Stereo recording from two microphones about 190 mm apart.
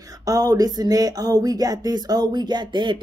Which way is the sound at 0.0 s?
20° right (ahead or behind).